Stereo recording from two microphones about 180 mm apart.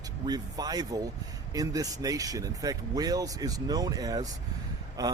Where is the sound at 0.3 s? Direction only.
20° right (ahead or behind).